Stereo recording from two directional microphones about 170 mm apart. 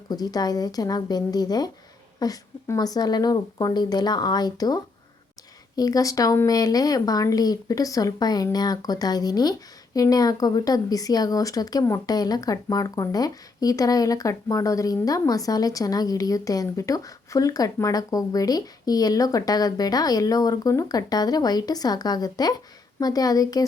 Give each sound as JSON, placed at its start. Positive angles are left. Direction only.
{"t": 0.1, "sound": "speech", "side_deg": 20}